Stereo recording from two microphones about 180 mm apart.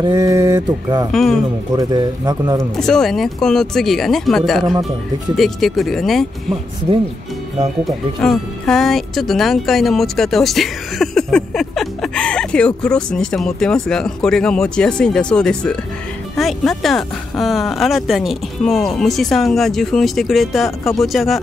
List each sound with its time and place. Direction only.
0.0 s mantra: 20° right (ahead or behind)
1.1 s speech: centre (ahead or behind)
1.8 s mantra: 20° right (ahead or behind)
2.8 s speech: centre (ahead or behind)
7.8 s speech: centre (ahead or behind)